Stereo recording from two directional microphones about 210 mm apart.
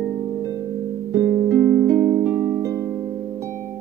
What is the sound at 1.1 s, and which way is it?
Music, 15° right (ahead or behind).